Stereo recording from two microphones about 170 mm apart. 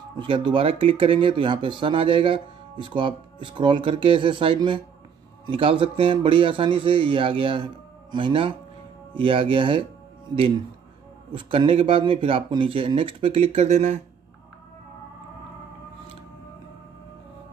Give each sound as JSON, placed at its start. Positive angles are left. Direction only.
{"t": 0.2, "sound": "a man's voice", "side_deg": -30}
{"t": 11.3, "sound": "a man's voice", "side_deg": -30}